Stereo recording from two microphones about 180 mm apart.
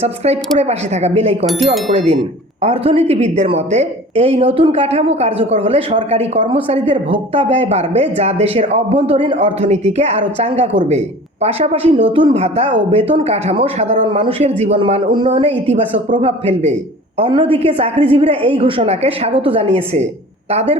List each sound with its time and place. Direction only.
0.0 s speech: 35° right (ahead or behind)